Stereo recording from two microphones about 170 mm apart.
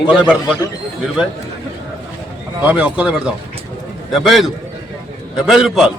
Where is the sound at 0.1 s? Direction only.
5° right (ahead or behind).